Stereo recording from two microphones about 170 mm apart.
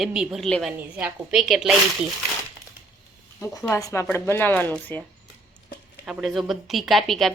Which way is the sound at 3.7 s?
15° left (ahead or behind).